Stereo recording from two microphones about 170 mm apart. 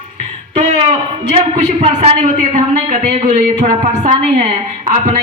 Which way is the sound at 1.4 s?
40° right (ahead or behind).